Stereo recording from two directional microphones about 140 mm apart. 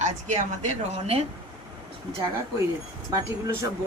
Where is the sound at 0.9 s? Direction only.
45° right (ahead or behind).